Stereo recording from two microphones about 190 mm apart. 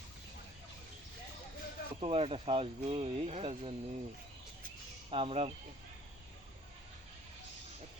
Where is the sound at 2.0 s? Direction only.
30° right (ahead or behind).